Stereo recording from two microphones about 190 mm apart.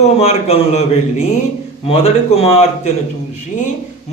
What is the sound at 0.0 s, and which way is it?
A man's voice, 35° left (ahead or behind).